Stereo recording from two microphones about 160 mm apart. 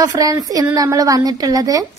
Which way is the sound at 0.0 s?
20° right (ahead or behind).